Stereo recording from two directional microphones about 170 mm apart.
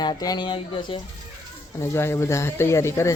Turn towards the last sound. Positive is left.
turn(degrees=15)  # may be behind; listen again after turning